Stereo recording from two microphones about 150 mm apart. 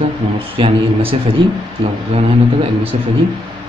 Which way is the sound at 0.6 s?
35° right (ahead or behind).